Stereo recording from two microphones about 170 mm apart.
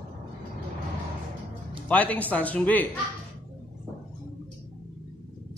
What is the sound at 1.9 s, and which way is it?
Speech, 10° left (ahead or behind).